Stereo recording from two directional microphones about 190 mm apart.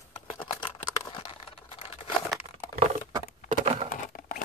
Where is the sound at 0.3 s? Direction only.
25° left (ahead or behind).